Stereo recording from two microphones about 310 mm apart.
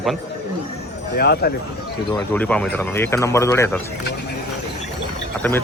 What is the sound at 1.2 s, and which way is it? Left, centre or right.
Speech, left.